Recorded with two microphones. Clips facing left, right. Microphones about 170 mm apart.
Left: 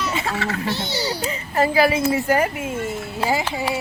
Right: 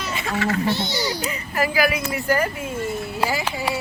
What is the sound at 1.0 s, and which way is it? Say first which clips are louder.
Speech: left 1 dB; 35° left (ahead or behind).